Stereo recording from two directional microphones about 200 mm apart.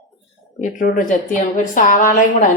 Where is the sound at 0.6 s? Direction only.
40° left (ahead or behind).